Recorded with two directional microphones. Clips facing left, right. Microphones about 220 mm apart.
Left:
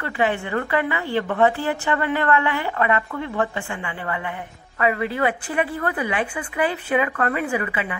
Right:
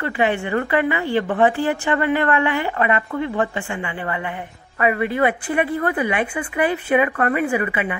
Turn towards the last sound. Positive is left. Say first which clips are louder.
# right 4 dB
turn(degrees=-15)  # may be behind; listen again after turning